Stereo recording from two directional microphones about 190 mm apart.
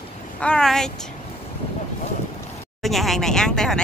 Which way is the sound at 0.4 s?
5° left (ahead or behind).